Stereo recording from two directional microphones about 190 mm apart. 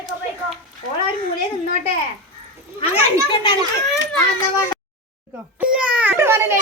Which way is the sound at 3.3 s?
25° left (ahead or behind).